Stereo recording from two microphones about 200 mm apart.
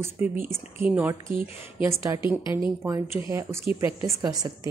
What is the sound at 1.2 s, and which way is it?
Speech, 45° right (ahead or behind).